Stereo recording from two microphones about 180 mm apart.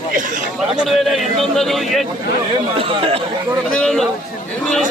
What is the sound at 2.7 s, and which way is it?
Speech, 30° right (ahead or behind).